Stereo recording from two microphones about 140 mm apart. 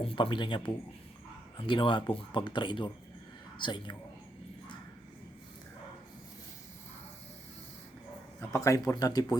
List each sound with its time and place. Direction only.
0.0 s speech: 35° left (ahead or behind)
8.4 s speech: 20° left (ahead or behind)